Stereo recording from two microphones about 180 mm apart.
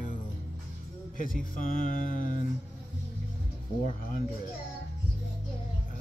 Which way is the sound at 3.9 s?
50° left (ahead or behind).